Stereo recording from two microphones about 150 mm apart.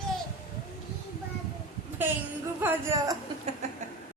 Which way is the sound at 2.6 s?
20° right (ahead or behind).